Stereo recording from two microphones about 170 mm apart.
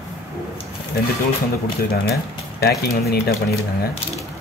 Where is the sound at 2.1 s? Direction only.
65° left (ahead or behind).